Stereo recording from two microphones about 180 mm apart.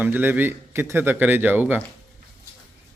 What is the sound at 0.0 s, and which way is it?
A man's voice, 10° right (ahead or behind).